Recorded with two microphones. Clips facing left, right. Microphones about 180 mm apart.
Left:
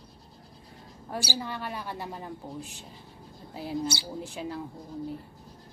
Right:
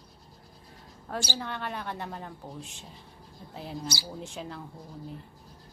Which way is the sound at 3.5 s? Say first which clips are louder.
Left 5 dB; centre (ahead or behind).